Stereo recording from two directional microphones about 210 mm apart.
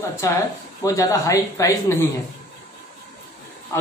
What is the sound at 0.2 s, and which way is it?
Speech, 15° left (ahead or behind).